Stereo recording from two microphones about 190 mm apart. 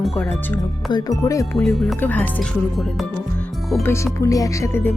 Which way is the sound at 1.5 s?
Centre (ahead or behind).